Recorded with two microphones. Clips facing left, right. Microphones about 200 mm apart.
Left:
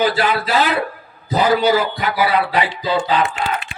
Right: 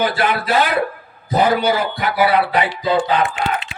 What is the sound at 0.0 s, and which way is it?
A man's voice, 55° right (ahead or behind).